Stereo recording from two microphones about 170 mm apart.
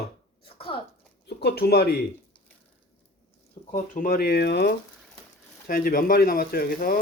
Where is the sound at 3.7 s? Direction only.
50° left (ahead or behind); by 4.8 s 75° left (ahead or behind).